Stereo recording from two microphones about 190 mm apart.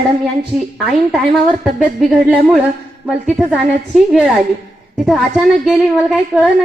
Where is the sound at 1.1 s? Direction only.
5° right (ahead or behind).